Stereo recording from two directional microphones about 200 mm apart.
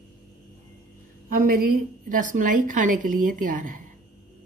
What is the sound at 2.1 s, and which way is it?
A woman's voice, 40° right (ahead or behind).